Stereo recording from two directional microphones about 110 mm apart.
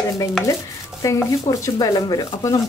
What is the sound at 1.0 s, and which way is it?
Speech, 30° left (ahead or behind).